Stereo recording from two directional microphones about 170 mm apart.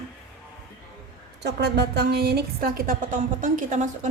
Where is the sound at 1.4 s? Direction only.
75° right (ahead or behind); by 4.1 s 45° right (ahead or behind).